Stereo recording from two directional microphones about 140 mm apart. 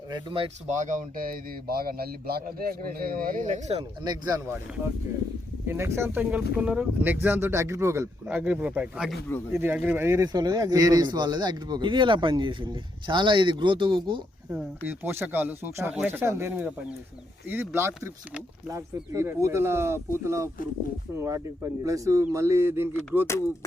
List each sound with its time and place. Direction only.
0.1 s speech: 40° right (ahead or behind)
0.7 s speech: 60° right (ahead or behind)
4.0 s speech: 30° right (ahead or behind)
5.6 s speech: 20° right (ahead or behind); by 14.2 s 35° right (ahead or behind)
14.8 s speech: 15° right (ahead or behind)